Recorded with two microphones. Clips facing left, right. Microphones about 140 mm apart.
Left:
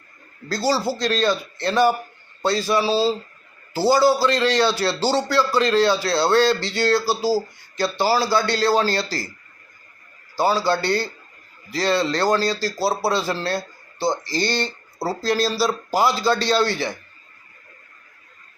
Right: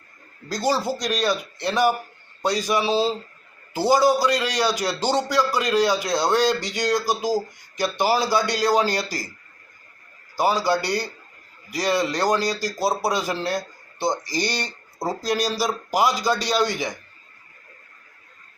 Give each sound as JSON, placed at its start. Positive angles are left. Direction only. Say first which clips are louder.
{"t": 0.4, "sound": "a man's voice", "louder": "left 1 dB", "side_deg": -15}
{"t": 10.3, "sound": "a man's voice", "louder": "left 1 dB", "side_deg": -15}